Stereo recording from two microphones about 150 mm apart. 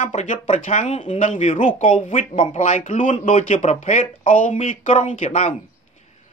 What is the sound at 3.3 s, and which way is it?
Speech, 45° left (ahead or behind).